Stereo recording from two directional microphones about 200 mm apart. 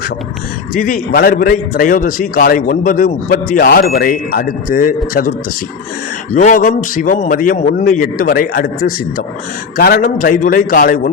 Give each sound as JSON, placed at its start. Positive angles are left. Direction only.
{"t": 0.7, "sound": "a man's voice", "side_deg": 45}
{"t": 6.3, "sound": "a man's voice", "side_deg": 40}